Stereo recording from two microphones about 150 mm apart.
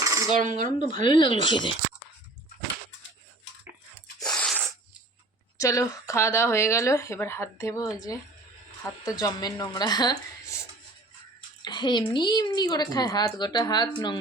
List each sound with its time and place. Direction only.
0.0 s coin: 20° right (ahead or behind)
0.3 s a sound: 55° right (ahead or behind)
1.0 s speech: 35° left (ahead or behind)
4.2 s a sound: 5° left (ahead or behind)
5.5 s speech: 20° left (ahead or behind)
11.6 s speech: 30° left (ahead or behind)